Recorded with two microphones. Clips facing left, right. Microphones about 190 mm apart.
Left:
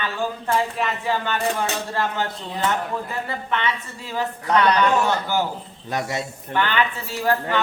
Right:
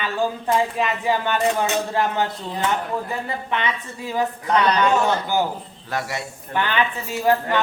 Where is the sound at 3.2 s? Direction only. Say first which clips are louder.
Even; 15° right (ahead or behind).